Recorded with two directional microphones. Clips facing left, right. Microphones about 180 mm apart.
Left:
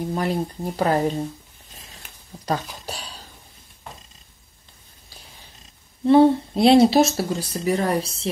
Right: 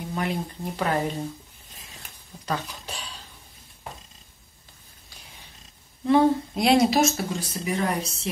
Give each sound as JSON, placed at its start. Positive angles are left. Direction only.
{"t": 0.1, "sound": "speech", "side_deg": 35}
{"t": 2.4, "sound": "speech", "side_deg": 40}
{"t": 6.0, "sound": "a sound", "side_deg": 30}
{"t": 7.2, "sound": "speech", "side_deg": 35}